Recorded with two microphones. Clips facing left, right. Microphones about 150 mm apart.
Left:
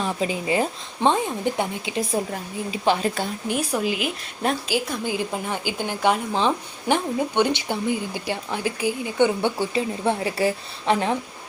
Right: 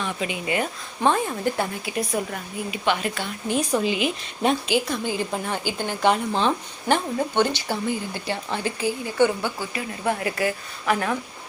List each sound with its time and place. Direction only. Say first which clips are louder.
0.0 s speech: left 3 dB; 35° left (ahead or behind)
1.0 s a woman's voice: left 1 dB; 20° left (ahead or behind); by 3.3 s 35° left (ahead or behind)
3.5 s speech: right 3 dB; 10° left (ahead or behind); by 11.2 s 25° left (ahead or behind)